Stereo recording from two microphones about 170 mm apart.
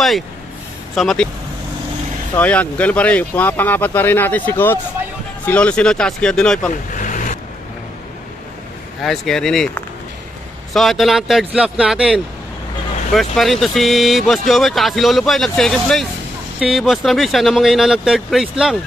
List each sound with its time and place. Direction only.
0.9 s speech: 5° left (ahead or behind)
2.3 s speech: 10° left (ahead or behind)
6.7 s vehicle: 50° left (ahead or behind)
9.0 s speech: centre (ahead or behind)